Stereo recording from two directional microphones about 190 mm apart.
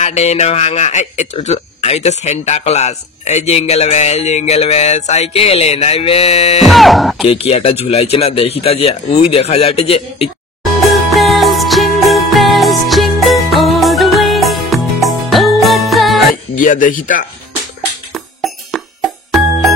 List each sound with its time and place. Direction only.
0.0 s speech: 35° left (ahead or behind)
6.6 s speech: centre (ahead or behind)
7.2 s speech: 30° left (ahead or behind)
10.6 s music: centre (ahead or behind)
16.5 s speech: 45° left (ahead or behind)
18.1 s music: centre (ahead or behind)